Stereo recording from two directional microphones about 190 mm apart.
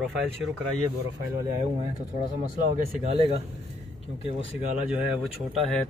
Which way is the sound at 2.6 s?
30° right (ahead or behind).